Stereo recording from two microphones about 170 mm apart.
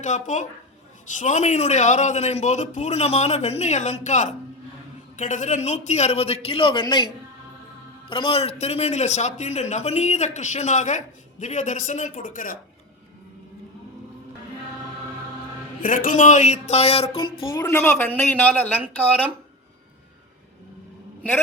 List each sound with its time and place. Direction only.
0.0 s a man's voice: 45° left (ahead or behind); by 7.1 s 25° left (ahead or behind)
8.1 s a man's voice: 35° left (ahead or behind); by 12.5 s 55° left (ahead or behind)
15.8 s a man's voice: 50° left (ahead or behind)
17.2 s a woman's voice: 20° left (ahead or behind)